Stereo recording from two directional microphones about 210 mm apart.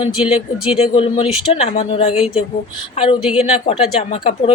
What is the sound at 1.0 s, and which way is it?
Speech, 25° left (ahead or behind).